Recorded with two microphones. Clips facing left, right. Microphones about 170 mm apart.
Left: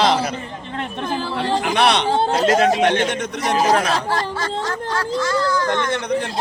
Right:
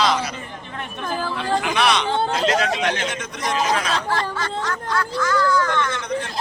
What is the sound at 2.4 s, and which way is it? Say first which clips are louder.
Speech: left 8 dB; 50° left (ahead or behind).